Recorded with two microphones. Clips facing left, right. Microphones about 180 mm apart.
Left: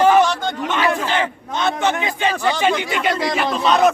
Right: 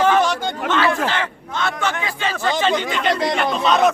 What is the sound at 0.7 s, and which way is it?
A man's voice, 15° left (ahead or behind).